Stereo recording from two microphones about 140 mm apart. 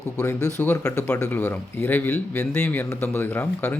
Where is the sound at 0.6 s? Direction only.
10° left (ahead or behind).